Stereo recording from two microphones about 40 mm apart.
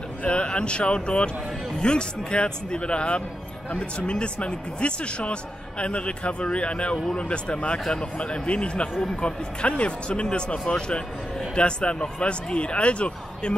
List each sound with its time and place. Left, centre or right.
0.2 s speech: left